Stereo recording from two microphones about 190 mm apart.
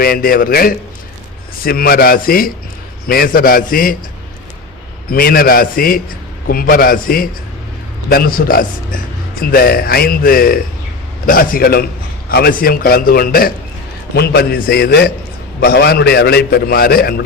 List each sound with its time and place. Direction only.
0.0 s a man's voice: 50° left (ahead or behind)
5.1 s a man's voice: 50° left (ahead or behind)